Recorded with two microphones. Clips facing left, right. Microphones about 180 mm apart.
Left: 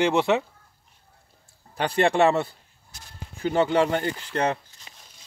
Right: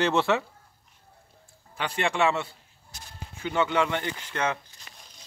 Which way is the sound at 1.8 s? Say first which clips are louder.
Left 6 dB; 40° left (ahead or behind).